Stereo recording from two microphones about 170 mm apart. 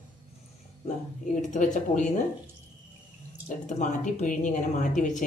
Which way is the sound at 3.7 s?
50° left (ahead or behind).